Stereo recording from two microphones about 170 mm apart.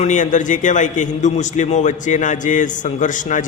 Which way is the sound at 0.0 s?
45° left (ahead or behind).